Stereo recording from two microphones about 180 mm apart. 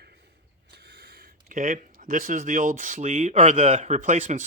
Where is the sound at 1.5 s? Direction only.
45° right (ahead or behind).